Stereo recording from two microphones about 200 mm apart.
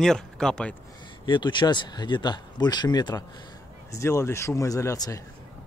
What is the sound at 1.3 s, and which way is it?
Speech, 25° left (ahead or behind).